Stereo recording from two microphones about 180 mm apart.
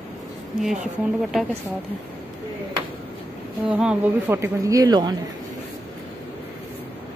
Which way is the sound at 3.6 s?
5° right (ahead or behind).